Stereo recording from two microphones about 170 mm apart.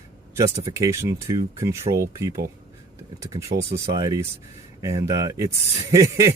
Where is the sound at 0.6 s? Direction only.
20° right (ahead or behind).